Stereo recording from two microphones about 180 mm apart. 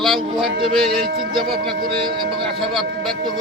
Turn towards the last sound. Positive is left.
turn(degrees=-25)  # may be behind; listen again after turning